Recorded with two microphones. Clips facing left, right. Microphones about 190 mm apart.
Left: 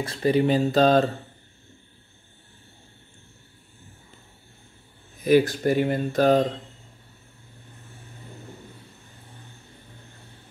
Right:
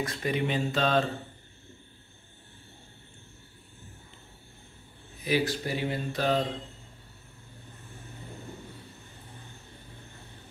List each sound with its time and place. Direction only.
0.0 s speech: 30° left (ahead or behind)
5.2 s speech: 50° left (ahead or behind)